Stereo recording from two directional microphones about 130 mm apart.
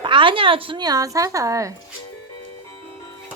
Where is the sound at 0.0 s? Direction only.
40° right (ahead or behind).